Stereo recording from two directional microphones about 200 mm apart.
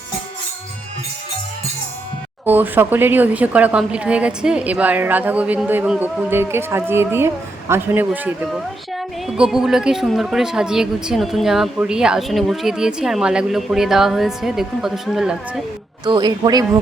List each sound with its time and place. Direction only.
2.4 s a woman's voice: 10° right (ahead or behind)
16.0 s speech: 20° right (ahead or behind)